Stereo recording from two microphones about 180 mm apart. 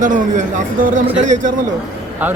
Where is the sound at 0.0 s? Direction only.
45° right (ahead or behind).